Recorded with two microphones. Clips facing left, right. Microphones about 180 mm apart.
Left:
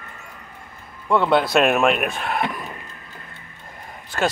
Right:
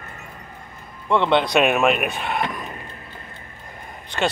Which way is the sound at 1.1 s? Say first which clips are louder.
Left 1 dB; 5° left (ahead or behind).